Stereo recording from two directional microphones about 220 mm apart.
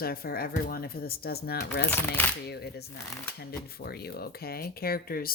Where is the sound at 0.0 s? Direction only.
45° left (ahead or behind).